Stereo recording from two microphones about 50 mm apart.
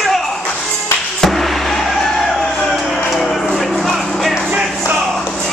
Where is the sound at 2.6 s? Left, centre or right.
Centre.